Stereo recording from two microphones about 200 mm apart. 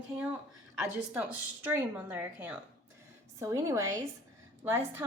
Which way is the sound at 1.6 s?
10° right (ahead or behind).